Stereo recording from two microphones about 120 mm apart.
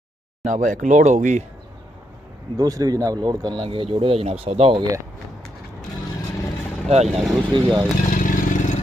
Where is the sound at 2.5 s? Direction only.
30° right (ahead or behind); by 4.8 s 50° right (ahead or behind).